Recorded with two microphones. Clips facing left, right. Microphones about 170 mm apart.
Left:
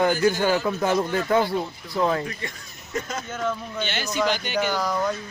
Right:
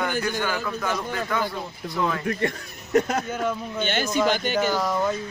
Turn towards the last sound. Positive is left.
turn(degrees=0)  # may be behind; listen again after turning